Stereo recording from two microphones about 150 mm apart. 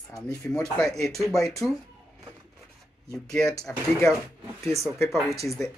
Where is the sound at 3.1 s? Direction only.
5° left (ahead or behind).